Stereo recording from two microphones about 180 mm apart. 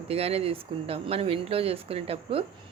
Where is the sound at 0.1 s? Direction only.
35° right (ahead or behind).